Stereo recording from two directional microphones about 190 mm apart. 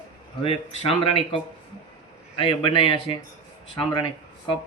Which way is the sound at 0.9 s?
30° left (ahead or behind).